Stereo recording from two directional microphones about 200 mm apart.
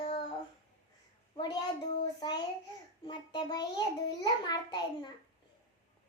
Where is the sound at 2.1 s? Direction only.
20° left (ahead or behind).